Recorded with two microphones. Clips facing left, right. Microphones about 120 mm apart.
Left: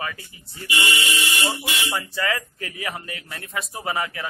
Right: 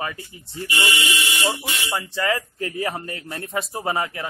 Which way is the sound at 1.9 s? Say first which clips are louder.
Right 4 dB; 25° right (ahead or behind).